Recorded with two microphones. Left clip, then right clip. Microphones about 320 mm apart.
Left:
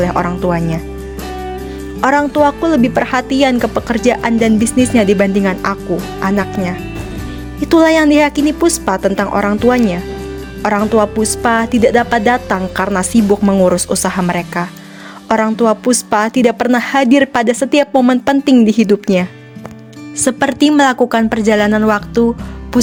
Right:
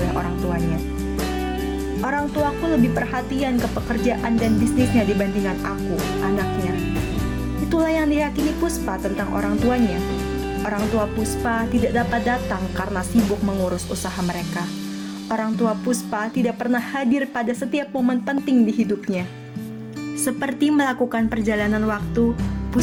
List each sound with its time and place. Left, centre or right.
2.0 s a woman's voice: left
7.7 s a woman's voice: left
20.2 s a woman's voice: left